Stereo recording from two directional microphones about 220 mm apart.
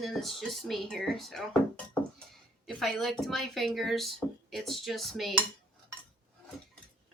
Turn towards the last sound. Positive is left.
turn(degrees=0)  # may be behind; listen again after turning